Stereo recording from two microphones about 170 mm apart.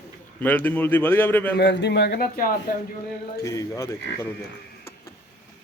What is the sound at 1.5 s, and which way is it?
A man's voice, 85° left.